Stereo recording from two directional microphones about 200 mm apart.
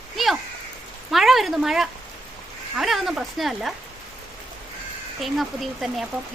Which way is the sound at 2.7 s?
Centre (ahead or behind).